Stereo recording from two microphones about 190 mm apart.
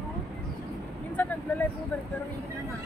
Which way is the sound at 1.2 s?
10° left (ahead or behind).